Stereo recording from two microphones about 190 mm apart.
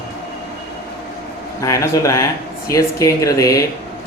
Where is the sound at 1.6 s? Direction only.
15° left (ahead or behind).